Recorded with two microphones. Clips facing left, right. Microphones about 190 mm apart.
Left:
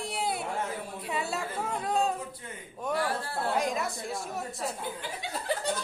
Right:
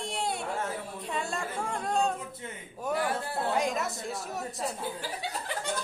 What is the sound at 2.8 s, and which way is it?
Speech, 15° right (ahead or behind).